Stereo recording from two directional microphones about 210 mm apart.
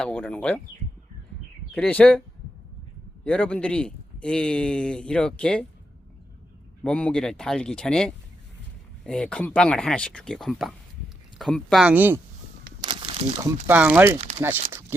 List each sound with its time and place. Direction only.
0.0 s speech: 5° left (ahead or behind)
1.7 s speech: 5° left (ahead or behind)
3.2 s a man's voice: 5° left (ahead or behind)
6.8 s a man's voice: 5° left (ahead or behind)
12.8 s crumpling: 25° right (ahead or behind)
13.7 s speech: 10° right (ahead or behind)